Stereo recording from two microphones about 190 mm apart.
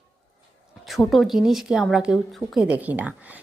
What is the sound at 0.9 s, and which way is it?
Speech, centre (ahead or behind).